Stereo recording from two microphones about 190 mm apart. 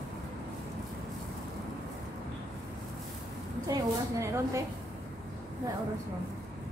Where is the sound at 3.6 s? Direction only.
15° right (ahead or behind).